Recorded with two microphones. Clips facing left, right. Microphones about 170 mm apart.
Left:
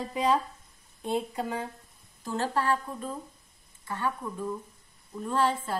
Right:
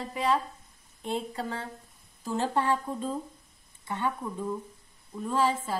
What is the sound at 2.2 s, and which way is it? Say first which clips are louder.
A woman's voice: right 1 dB; 15° right (ahead or behind).